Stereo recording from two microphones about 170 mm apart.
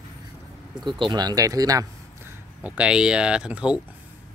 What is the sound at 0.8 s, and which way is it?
Speech, 25° right (ahead or behind).